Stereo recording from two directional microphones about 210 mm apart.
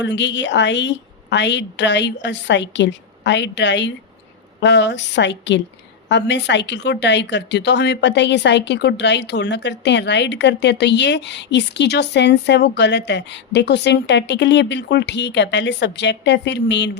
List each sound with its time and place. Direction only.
0.0 s a woman's voice: 60° left (ahead or behind)